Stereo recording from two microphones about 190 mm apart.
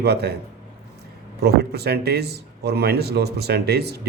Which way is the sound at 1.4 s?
55° right (ahead or behind).